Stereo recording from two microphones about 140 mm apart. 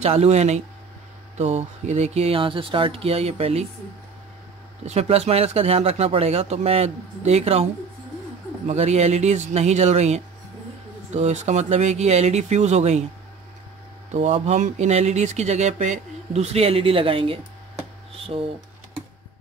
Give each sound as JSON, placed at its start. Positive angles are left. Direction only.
{"t": 0.0, "sound": "speech", "side_deg": -50}
{"t": 4.8, "sound": "speech", "side_deg": -50}
{"t": 8.6, "sound": "speech", "side_deg": -50}
{"t": 14.1, "sound": "speech", "side_deg": -50}